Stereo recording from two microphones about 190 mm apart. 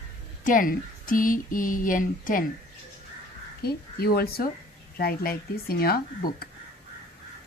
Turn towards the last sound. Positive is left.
turn(degrees=50)  # may be behind; listen again after turning